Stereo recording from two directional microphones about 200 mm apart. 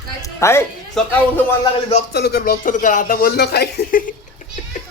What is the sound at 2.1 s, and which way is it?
Speech, 50° left (ahead or behind).